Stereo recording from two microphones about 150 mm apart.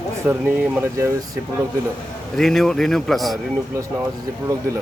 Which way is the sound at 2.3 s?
Centre (ahead or behind).